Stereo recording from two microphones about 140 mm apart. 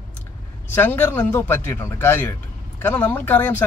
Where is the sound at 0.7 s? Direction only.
15° left (ahead or behind).